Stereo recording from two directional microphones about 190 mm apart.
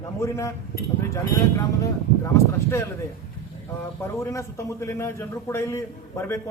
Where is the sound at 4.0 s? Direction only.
15° left (ahead or behind).